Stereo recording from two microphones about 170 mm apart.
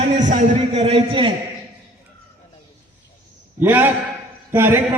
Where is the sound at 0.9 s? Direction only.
30° right (ahead or behind).